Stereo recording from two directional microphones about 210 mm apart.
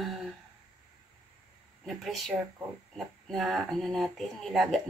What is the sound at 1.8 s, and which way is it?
Speech, centre (ahead or behind).